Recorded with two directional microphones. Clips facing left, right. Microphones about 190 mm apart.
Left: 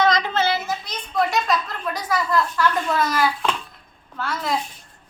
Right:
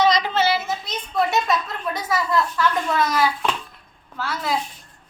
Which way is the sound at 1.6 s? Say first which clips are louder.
Right 1 dB; 25° right (ahead or behind).